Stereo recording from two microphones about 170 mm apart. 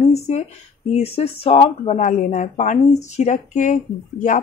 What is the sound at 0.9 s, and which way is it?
Speech, 35° left (ahead or behind).